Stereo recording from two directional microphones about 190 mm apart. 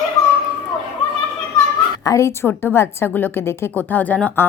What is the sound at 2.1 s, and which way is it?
A woman's voice, 15° left (ahead or behind).